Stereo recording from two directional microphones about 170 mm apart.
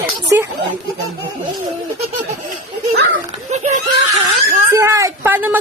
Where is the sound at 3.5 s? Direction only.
45° right (ahead or behind).